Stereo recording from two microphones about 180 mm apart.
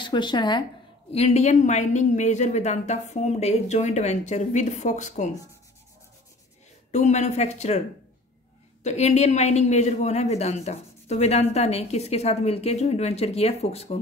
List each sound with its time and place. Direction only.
0.0 s speech: 25° left (ahead or behind)
1.1 s a woman's voice: 35° left (ahead or behind)
6.9 s a woman's voice: 40° left (ahead or behind)
8.8 s a woman's voice: 40° left (ahead or behind)